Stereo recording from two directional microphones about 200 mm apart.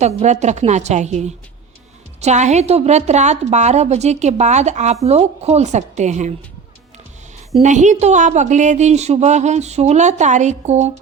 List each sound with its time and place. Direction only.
0.0 s a woman's voice: 35° right (ahead or behind)
7.5 s a woman's voice: 35° right (ahead or behind)